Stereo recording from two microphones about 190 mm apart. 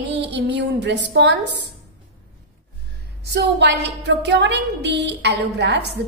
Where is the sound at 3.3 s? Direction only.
65° right (ahead or behind).